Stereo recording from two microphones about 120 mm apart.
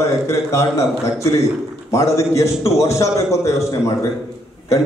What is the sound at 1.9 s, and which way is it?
A man's voice, 25° left (ahead or behind).